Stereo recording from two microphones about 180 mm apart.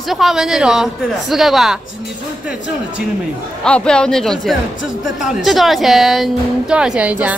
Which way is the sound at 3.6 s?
5° left (ahead or behind).